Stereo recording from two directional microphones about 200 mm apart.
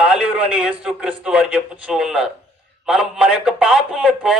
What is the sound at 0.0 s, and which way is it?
A man's voice, 5° right (ahead or behind).